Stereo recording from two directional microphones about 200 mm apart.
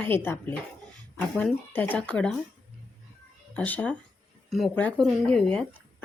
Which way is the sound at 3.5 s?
5° left (ahead or behind).